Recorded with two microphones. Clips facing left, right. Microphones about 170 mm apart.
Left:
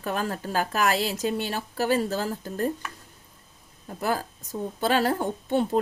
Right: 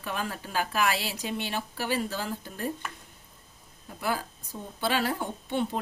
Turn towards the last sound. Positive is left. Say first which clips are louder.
# left 6 dB
turn(degrees=45)  # may be behind; listen again after turning